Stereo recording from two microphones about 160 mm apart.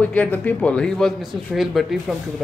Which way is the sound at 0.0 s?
10° left (ahead or behind).